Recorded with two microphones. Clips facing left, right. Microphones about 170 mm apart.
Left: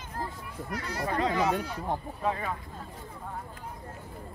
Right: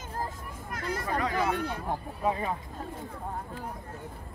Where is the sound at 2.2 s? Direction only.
20° right (ahead or behind).